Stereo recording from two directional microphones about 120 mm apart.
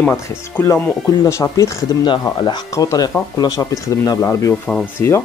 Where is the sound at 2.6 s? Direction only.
25° left (ahead or behind).